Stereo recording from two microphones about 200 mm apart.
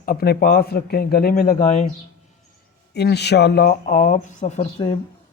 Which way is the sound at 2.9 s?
55° left (ahead or behind).